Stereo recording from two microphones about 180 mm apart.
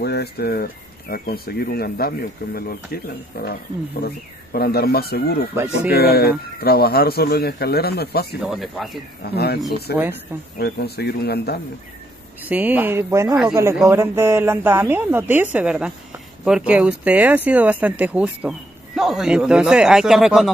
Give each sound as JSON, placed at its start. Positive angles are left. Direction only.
{"t": 0.0, "sound": "speech", "side_deg": 65}
{"t": 8.5, "sound": "speech", "side_deg": 0}
{"t": 9.2, "sound": "speech", "side_deg": 60}
{"t": 12.4, "sound": "speech", "side_deg": -10}